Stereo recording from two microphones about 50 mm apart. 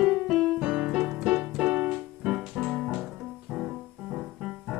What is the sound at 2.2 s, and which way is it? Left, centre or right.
Music, centre.